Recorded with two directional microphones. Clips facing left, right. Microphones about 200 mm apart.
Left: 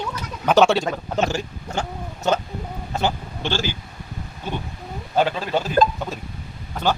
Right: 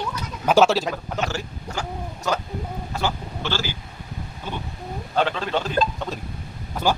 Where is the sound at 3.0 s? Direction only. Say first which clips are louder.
Left 3 dB; 20° left (ahead or behind).